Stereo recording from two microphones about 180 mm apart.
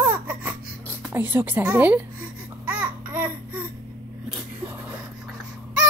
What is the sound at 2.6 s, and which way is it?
Babbling, 10° right (ahead or behind).